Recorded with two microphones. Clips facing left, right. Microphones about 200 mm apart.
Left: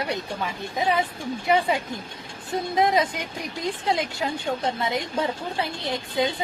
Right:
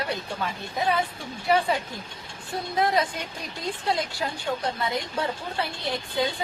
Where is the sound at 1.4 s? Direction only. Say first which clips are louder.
Left 1 dB; 20° left (ahead or behind).